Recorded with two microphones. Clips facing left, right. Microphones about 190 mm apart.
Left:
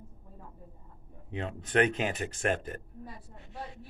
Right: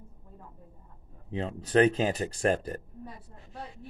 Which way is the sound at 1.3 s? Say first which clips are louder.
Right 4 dB; 35° right (ahead or behind).